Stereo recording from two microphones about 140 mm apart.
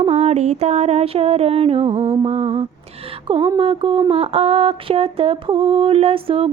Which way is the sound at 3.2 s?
40° right (ahead or behind).